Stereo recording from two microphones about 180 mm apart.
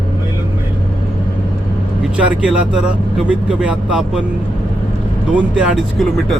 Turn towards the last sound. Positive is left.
turn(degrees=0)  # may be behind; listen again after turning